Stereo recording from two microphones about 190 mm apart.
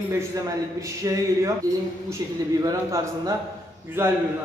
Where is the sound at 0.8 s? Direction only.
15° right (ahead or behind).